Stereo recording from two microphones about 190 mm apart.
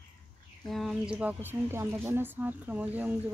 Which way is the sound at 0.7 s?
Centre (ahead or behind).